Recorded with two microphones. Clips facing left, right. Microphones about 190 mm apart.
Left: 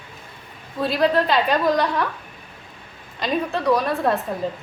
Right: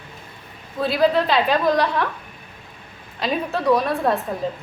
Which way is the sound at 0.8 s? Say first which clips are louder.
Right 1 dB; centre (ahead or behind).